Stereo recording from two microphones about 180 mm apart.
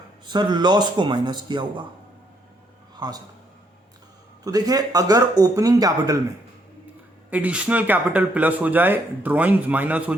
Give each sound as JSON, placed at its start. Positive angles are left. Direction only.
{"t": 0.3, "sound": "a man's voice", "side_deg": -25}
{"t": 4.4, "sound": "a man's voice", "side_deg": -20}
{"t": 7.3, "sound": "speech", "side_deg": -10}